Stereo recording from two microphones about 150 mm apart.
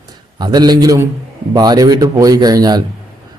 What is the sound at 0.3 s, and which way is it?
A man's voice, 30° right (ahead or behind).